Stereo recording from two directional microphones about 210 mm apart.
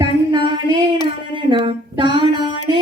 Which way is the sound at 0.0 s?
20° right (ahead or behind).